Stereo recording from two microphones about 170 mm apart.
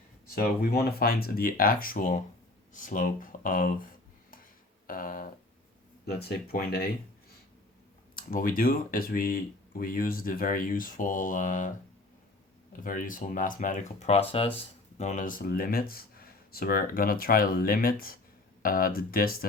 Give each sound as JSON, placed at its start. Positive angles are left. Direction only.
{"t": 0.3, "sound": "speech", "side_deg": 60}
{"t": 4.9, "sound": "speech", "side_deg": 55}
{"t": 6.1, "sound": "speech", "side_deg": 70}
{"t": 8.1, "sound": "speech", "side_deg": 55}
{"t": 12.7, "sound": "speech", "side_deg": 55}
{"t": 14.9, "sound": "speech", "side_deg": 45}